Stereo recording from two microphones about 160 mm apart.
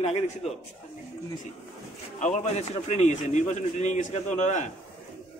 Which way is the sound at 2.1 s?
50° left (ahead or behind).